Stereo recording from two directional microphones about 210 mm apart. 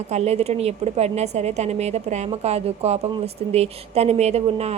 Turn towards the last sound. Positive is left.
turn(degrees=-30)  # may be behind; listen again after turning